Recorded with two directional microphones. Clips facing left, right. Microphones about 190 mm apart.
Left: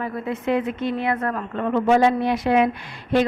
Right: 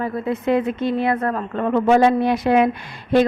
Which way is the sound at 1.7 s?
50° right (ahead or behind).